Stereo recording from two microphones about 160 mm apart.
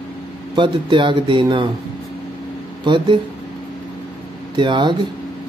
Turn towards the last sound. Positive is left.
turn(degrees=-30)  # may be behind; listen again after turning